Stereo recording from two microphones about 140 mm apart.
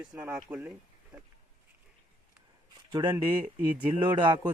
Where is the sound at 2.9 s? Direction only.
30° right (ahead or behind).